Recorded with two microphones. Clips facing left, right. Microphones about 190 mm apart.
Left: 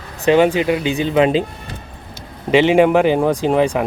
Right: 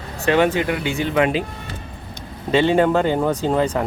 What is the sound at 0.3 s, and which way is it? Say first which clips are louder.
Speech: left 4 dB; 15° left (ahead or behind).